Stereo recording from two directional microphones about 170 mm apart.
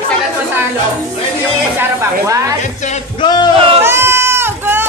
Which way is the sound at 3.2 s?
25° left (ahead or behind).